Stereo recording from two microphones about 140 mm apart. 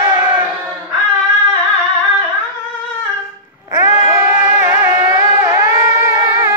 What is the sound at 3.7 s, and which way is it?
Music, 20° right (ahead or behind).